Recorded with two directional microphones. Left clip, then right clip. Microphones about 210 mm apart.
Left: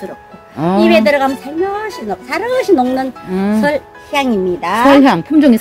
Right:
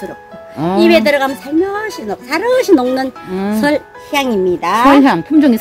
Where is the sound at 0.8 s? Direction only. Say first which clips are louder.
Even; 35° right (ahead or behind).